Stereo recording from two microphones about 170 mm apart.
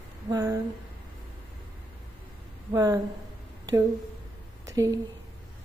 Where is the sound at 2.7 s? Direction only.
20° right (ahead or behind).